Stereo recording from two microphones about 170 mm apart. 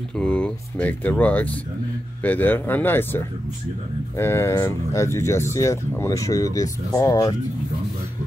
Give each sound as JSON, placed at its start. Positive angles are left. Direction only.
{"t": 0.1, "sound": "speech", "side_deg": 5}